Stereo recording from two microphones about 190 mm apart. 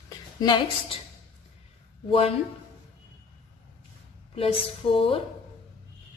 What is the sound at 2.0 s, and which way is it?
Speech, 30° left (ahead or behind).